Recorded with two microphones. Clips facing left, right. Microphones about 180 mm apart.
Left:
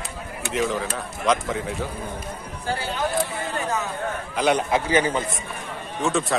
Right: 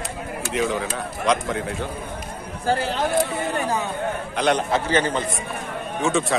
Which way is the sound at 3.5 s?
35° right (ahead or behind).